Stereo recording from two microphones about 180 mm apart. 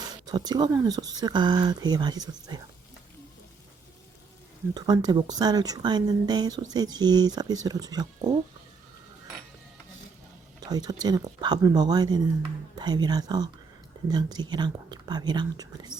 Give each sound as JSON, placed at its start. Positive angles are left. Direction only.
{"t": 0.0, "sound": "speech", "side_deg": -25}
{"t": 4.7, "sound": "speech", "side_deg": -25}
{"t": 10.6, "sound": "speech", "side_deg": -20}